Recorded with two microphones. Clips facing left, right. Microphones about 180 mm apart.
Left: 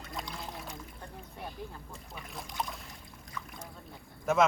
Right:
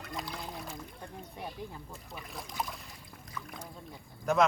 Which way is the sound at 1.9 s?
Centre (ahead or behind).